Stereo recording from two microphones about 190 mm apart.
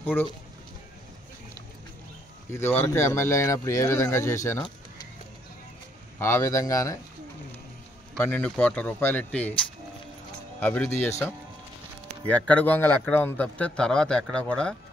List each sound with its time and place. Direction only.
0.0 s speech: 10° left (ahead or behind)
2.5 s a man's voice: 10° left (ahead or behind)
6.1 s a man's voice: 15° left (ahead or behind)
8.1 s a man's voice: 10° left (ahead or behind)
10.6 s a man's voice: 10° left (ahead or behind)